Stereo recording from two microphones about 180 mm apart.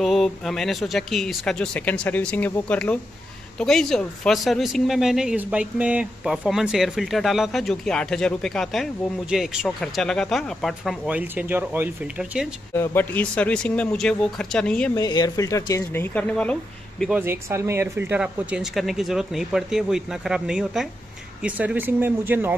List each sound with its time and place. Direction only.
0.0 s speech: centre (ahead or behind)
12.7 s speech: 15° left (ahead or behind)
15.0 s speech: 20° left (ahead or behind); by 16.5 s 5° left (ahead or behind)
17.2 s speech: 15° right (ahead or behind)